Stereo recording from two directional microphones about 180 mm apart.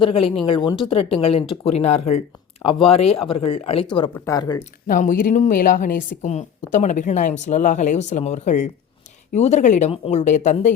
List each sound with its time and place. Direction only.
0.0 s speech: 30° left (ahead or behind)
4.9 s a woman's voice: 50° left (ahead or behind)